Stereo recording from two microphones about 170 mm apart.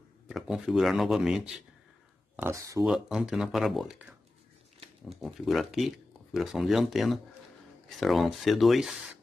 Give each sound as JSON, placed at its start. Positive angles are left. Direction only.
{"t": 0.3, "sound": "speech", "side_deg": 0}
{"t": 2.4, "sound": "speech", "side_deg": -20}
{"t": 2.8, "sound": "speech", "side_deg": 0}
{"t": 5.2, "sound": "speech", "side_deg": 0}